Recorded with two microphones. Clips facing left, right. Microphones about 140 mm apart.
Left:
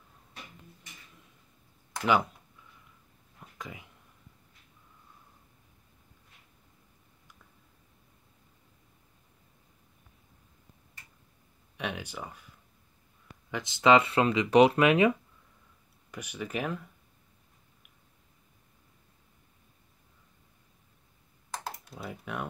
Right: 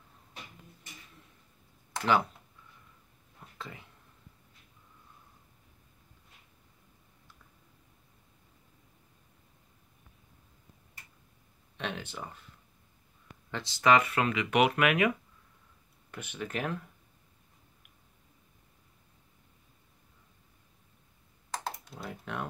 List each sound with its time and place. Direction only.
3.5 s a sound: 15° left (ahead or behind)
11.7 s speech: 10° left (ahead or behind); by 15.1 s 30° left (ahead or behind)
16.1 s speech: 10° left (ahead or behind)
21.6 s speech: 5° left (ahead or behind)